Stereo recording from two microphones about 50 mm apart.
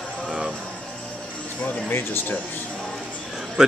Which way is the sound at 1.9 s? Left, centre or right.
Left.